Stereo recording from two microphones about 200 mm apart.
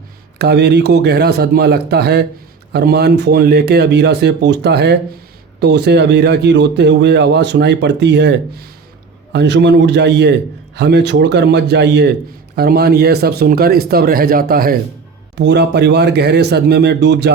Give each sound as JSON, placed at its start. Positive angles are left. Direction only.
{"t": 0.3, "sound": "a man's voice", "side_deg": -55}
{"t": 15.4, "sound": "a man's voice", "side_deg": -60}